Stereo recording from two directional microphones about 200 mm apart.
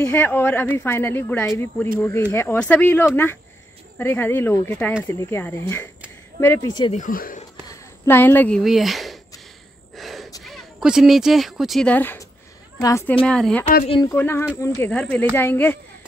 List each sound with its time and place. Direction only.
0.0 s a woman's voice: 10° left (ahead or behind)
6.9 s speech: 40° left (ahead or behind)
7.6 s speech: 15° left (ahead or behind); by 9.2 s centre (ahead or behind)
9.9 s gasp: centre (ahead or behind)
10.4 s a woman's voice: centre (ahead or behind)